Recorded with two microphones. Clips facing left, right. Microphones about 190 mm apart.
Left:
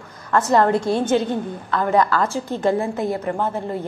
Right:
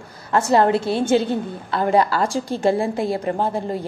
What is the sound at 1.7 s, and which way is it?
Speech, 30° right (ahead or behind).